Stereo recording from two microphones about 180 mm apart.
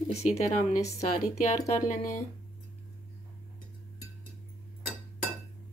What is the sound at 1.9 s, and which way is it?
Speech, 45° left (ahead or behind).